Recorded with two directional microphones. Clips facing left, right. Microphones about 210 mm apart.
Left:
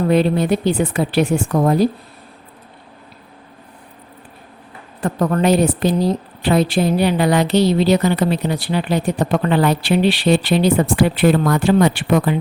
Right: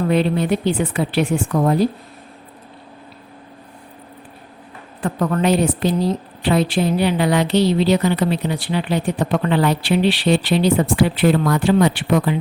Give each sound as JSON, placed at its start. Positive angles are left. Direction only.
{"t": 0.1, "sound": "a woman's voice", "side_deg": 40}
{"t": 4.9, "sound": "a woman's voice", "side_deg": 40}